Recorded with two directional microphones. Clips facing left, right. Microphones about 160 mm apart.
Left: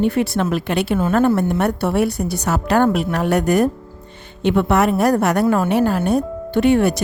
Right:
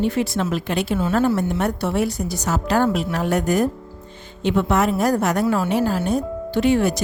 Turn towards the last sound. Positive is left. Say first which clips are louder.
# left 3 dB
turn(degrees=60)  # may be behind; listen again after turning